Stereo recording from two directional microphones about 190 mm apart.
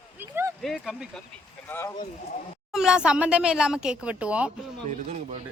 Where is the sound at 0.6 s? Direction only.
Centre (ahead or behind).